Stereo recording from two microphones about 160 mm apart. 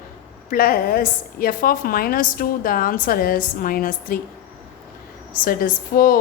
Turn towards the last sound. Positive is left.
turn(degrees=65)  # may be behind; listen again after turning